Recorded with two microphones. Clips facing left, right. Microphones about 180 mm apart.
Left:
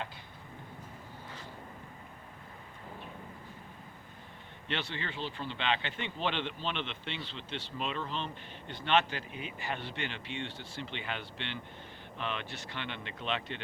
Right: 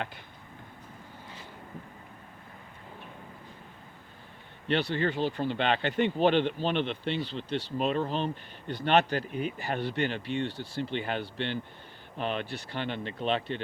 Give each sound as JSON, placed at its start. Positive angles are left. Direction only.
{"t": 4.7, "sound": "speech", "side_deg": -40}